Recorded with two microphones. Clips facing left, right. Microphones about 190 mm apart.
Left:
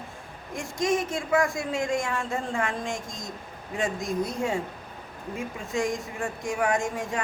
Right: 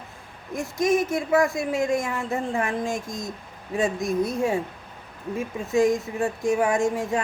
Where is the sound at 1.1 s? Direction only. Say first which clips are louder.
Right 4 dB; 25° right (ahead or behind).